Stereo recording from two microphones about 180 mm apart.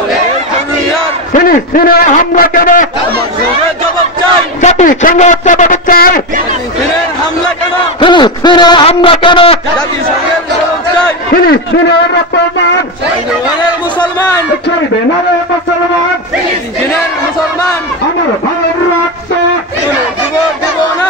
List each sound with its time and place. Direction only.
1.3 s a man's voice: 50° left (ahead or behind)
4.6 s a man's voice: 45° left (ahead or behind)
8.0 s a man's voice: 25° left (ahead or behind)
11.3 s a man's voice: 60° left (ahead or behind)
13.9 s a sound: 25° left (ahead or behind)